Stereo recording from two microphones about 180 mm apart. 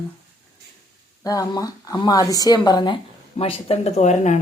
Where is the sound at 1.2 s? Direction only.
20° left (ahead or behind).